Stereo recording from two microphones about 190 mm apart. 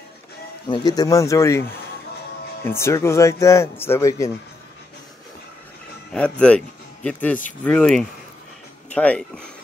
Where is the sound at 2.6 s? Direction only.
15° left (ahead or behind).